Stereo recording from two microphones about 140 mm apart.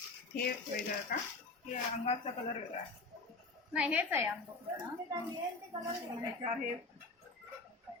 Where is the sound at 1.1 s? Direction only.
85° left.